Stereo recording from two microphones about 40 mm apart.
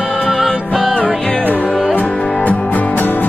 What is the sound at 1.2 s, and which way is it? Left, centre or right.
Music, left.